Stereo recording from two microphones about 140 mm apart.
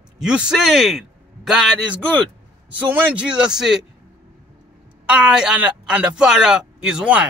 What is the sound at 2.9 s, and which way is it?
Speech, 10° right (ahead or behind).